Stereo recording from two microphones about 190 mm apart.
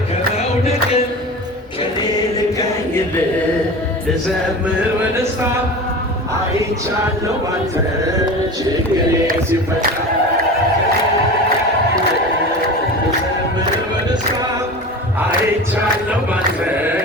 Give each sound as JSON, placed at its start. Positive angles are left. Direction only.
{"t": 0.6, "sound": "music", "side_deg": 35}